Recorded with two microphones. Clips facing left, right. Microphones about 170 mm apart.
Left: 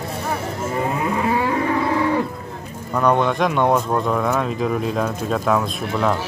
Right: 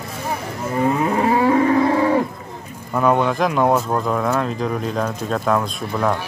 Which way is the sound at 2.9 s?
5° right (ahead or behind).